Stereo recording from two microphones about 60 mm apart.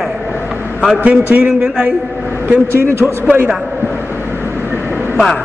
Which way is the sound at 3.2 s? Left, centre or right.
Right.